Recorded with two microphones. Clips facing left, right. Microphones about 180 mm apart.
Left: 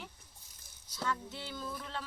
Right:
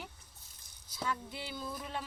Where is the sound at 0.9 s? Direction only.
10° right (ahead or behind).